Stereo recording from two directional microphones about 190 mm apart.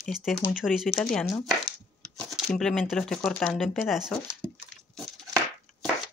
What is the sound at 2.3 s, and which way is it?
Speech, centre (ahead or behind).